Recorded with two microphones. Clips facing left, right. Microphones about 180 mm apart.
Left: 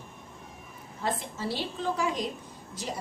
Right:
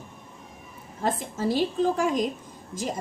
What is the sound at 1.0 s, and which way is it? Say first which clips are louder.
A woman's voice: right 5 dB; 45° right (ahead or behind).